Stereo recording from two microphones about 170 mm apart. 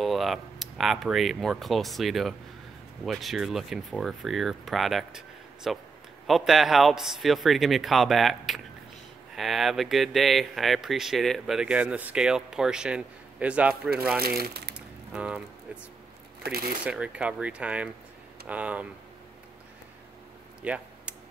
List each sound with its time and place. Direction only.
0.0 s speech: centre (ahead or behind)
14.2 s speech: 65° right (ahead or behind)
15.1 s speech: 5° right (ahead or behind)
16.8 s speech: 5° right (ahead or behind)
20.6 s a sound: 5° right (ahead or behind)